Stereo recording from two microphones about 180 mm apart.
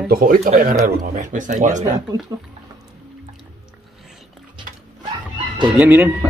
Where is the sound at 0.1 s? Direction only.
50° right (ahead or behind).